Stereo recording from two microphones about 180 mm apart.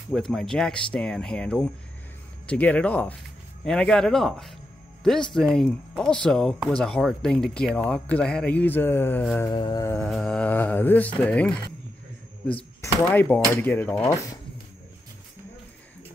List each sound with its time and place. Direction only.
0.1 s speech: centre (ahead or behind)
9.4 s a sound: 25° left (ahead or behind)
9.9 s speech: 5° left (ahead or behind)
12.8 s speech: 10° left (ahead or behind)